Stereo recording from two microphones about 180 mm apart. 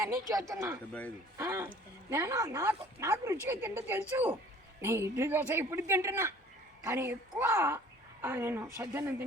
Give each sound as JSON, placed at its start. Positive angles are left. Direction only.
{"t": 0.0, "sound": "a man's voice", "side_deg": -20}